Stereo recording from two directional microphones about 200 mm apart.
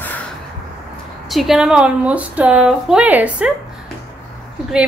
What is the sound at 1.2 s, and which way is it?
A woman's voice, centre (ahead or behind).